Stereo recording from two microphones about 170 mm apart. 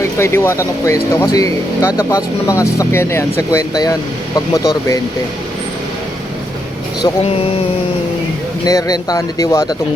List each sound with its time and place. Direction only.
0.0 s speech: 15° left (ahead or behind)
8.6 s speech: 20° left (ahead or behind)